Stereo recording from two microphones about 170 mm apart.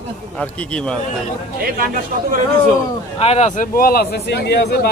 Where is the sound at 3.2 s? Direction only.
40° left (ahead or behind); by 4.9 s 75° left (ahead or behind).